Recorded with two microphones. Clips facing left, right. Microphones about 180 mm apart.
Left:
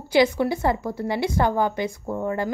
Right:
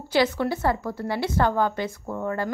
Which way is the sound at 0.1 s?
15° left (ahead or behind).